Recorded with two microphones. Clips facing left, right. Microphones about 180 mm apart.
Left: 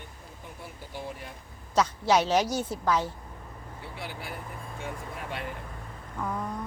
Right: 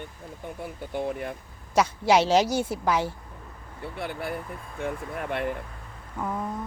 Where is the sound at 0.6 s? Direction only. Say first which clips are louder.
Right 9 dB; 55° right (ahead or behind).